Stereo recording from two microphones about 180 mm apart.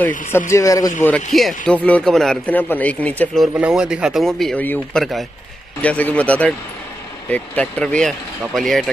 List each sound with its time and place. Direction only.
0.5 s a man's voice: 15° left (ahead or behind)
1.3 s a man's voice: 5° left (ahead or behind)
3.5 s a man's voice: 5° right (ahead or behind)